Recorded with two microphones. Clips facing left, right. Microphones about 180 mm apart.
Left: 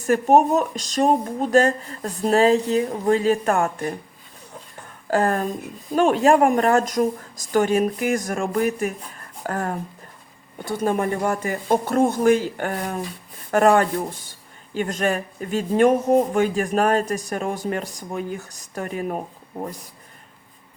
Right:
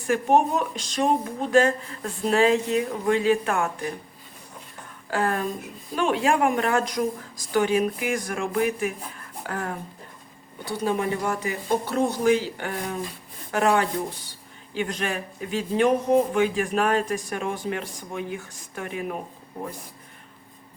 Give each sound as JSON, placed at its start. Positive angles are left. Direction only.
{"t": 0.0, "sound": "speech", "side_deg": 40}
{"t": 5.1, "sound": "speech", "side_deg": 45}